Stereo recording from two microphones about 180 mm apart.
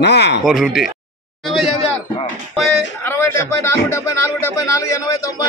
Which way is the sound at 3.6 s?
15° left (ahead or behind).